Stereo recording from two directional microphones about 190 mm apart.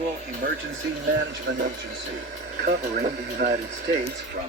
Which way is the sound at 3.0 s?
40° right (ahead or behind).